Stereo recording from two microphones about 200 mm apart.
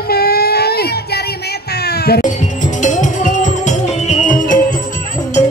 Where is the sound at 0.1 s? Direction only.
50° left (ahead or behind).